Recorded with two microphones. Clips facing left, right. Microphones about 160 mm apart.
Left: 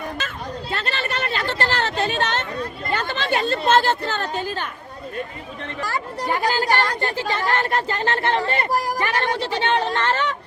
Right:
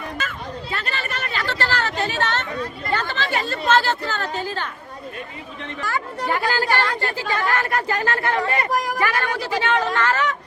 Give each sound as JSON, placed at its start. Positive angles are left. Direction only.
{"t": 0.2, "sound": "a sound", "side_deg": 30}
{"t": 3.0, "sound": "speech", "side_deg": 20}
{"t": 5.8, "sound": "speech", "side_deg": 35}
{"t": 6.5, "sound": "speech", "side_deg": 15}